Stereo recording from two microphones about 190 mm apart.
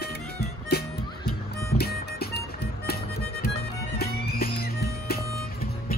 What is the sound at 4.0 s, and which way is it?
Music, 55° left (ahead or behind).